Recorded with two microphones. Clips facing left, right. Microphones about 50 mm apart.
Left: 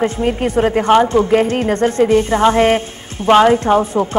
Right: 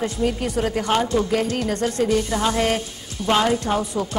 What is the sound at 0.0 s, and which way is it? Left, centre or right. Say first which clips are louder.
Speech: left 6 dB; left.